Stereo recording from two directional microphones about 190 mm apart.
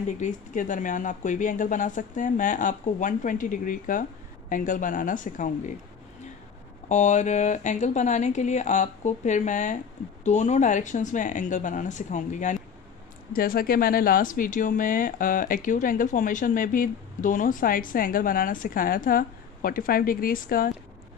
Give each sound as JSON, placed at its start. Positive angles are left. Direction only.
{"t": 0.2, "sound": "speech", "side_deg": 40}
{"t": 6.9, "sound": "speech", "side_deg": 40}